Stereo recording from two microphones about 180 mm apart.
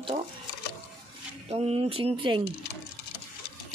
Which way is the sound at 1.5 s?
35° right (ahead or behind).